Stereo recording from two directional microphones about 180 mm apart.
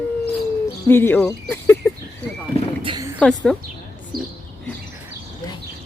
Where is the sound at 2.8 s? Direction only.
25° right (ahead or behind).